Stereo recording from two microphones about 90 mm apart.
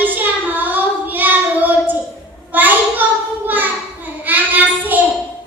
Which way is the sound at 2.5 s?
20° right (ahead or behind).